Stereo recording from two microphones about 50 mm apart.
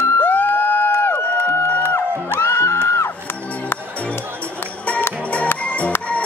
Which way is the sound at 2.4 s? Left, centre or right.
Left.